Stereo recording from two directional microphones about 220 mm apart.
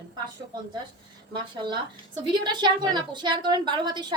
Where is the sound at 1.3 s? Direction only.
20° right (ahead or behind).